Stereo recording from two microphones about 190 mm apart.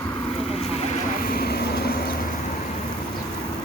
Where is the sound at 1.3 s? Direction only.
55° left (ahead or behind).